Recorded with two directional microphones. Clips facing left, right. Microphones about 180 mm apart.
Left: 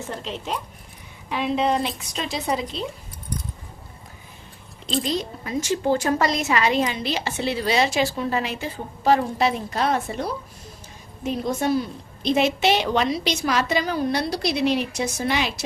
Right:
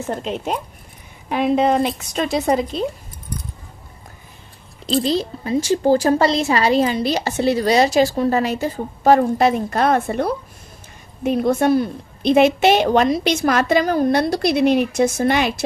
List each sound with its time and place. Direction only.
0.1 s a woman's voice: 50° right (ahead or behind)
4.9 s a woman's voice: 35° right (ahead or behind); by 15.6 s 55° right (ahead or behind)